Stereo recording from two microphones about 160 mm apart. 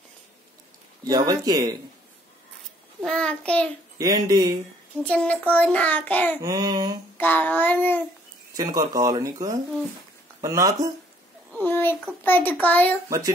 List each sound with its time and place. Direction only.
1.0 s speech: 25° right (ahead or behind)
3.0 s child singing: 5° left (ahead or behind)
4.0 s speech: 25° right (ahead or behind)
5.0 s a child's voice: 10° left (ahead or behind)
6.4 s speech: 25° right (ahead or behind)
7.2 s a child's voice: 10° left (ahead or behind)
8.5 s speech: 20° right (ahead or behind)
11.6 s a sound: 15° left (ahead or behind)
12.2 s a child's voice: 10° left (ahead or behind)